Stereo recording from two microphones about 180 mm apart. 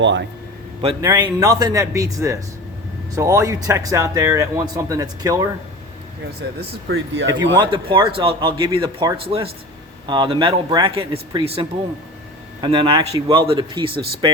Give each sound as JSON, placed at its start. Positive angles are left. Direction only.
{"t": 0.0, "sound": "speech", "side_deg": -90}
{"t": 1.0, "sound": "a man's voice", "side_deg": -20}
{"t": 6.6, "sound": "speech", "side_deg": -70}
{"t": 7.6, "sound": "a man's voice", "side_deg": -25}
{"t": 12.6, "sound": "a man's voice", "side_deg": -30}